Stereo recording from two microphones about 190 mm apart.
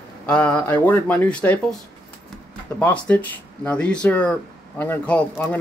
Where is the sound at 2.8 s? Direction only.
5° left (ahead or behind).